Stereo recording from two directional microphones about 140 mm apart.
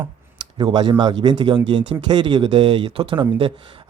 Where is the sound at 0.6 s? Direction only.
30° right (ahead or behind).